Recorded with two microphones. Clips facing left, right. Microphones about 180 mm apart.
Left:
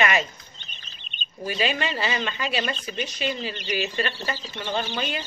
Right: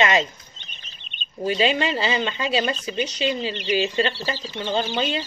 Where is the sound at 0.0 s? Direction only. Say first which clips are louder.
Right 3 dB; 25° right (ahead or behind).